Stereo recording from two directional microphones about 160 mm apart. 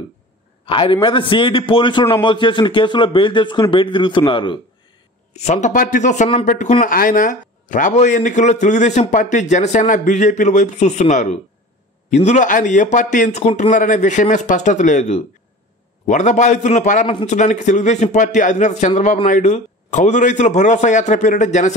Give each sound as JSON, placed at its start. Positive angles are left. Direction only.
{"t": 0.7, "sound": "a man's voice", "side_deg": 30}
{"t": 5.3, "sound": "speech", "side_deg": 45}